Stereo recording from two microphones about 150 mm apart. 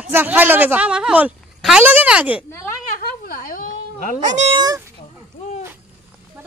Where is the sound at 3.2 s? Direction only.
65° left (ahead or behind).